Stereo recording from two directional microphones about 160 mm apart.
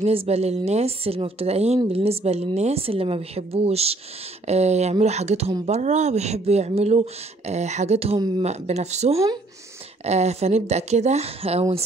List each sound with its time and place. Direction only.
0.0 s speech: 40° right (ahead or behind)
9.1 s speech: 20° right (ahead or behind)
10.0 s speech: 45° right (ahead or behind)